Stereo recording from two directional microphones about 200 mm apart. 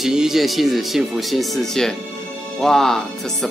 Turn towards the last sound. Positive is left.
turn(degrees=0)  # may be behind; listen again after turning